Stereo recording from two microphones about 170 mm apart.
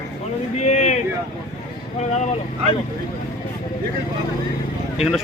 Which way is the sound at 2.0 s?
40° left (ahead or behind).